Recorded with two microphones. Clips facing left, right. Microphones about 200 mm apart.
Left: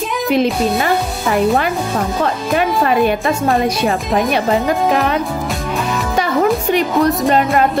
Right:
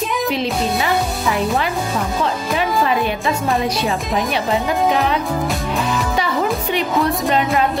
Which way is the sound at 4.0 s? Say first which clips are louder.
Left 4 dB; centre (ahead or behind).